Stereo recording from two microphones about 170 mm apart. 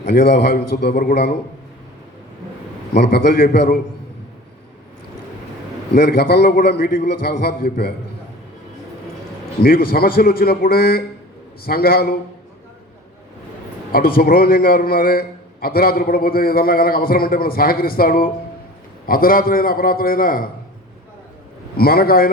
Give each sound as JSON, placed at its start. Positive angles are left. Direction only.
{"t": 0.1, "sound": "a man's voice", "side_deg": 70}
{"t": 2.9, "sound": "a man's voice", "side_deg": 65}
{"t": 5.9, "sound": "a man's voice", "side_deg": 65}
{"t": 9.6, "sound": "a man's voice", "side_deg": 60}
{"t": 13.9, "sound": "a man's voice", "side_deg": 60}
{"t": 21.8, "sound": "a man's voice", "side_deg": 65}